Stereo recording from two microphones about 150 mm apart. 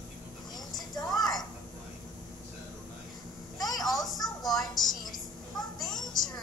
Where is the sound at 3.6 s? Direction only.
25° left (ahead or behind).